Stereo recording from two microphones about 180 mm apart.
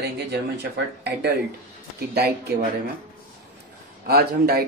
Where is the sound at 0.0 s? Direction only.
65° right (ahead or behind).